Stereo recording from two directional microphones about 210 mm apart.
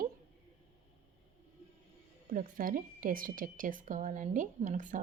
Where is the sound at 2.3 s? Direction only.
40° right (ahead or behind).